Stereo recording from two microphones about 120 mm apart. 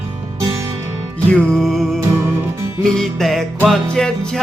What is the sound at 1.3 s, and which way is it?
Music, 5° left (ahead or behind).